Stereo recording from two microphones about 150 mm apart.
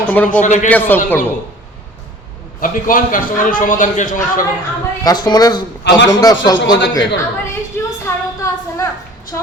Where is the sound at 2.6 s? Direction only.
65° left (ahead or behind).